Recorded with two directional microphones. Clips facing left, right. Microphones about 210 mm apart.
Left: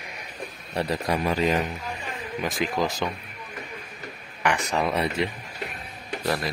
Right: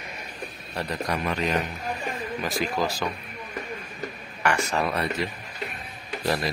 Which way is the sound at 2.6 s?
75° left (ahead or behind).